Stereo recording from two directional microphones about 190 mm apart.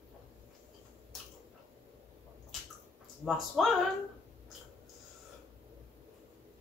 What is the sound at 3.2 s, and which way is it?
Speech, centre (ahead or behind).